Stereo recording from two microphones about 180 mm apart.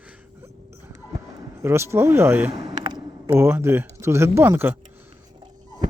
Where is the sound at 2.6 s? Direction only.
25° right (ahead or behind).